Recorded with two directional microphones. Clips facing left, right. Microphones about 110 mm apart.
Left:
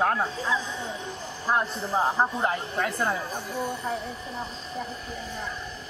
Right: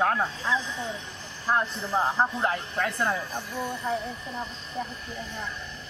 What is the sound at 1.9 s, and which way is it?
Speech, 5° left (ahead or behind).